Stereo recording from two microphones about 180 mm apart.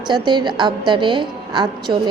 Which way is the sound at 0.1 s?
25° right (ahead or behind).